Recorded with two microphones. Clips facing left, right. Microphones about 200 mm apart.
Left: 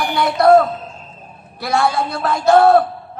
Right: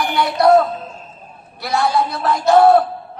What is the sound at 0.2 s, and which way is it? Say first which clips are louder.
Speech: left 1 dB; 50° left (ahead or behind).